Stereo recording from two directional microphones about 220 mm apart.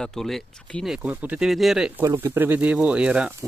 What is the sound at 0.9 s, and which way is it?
Speech, 5° right (ahead or behind).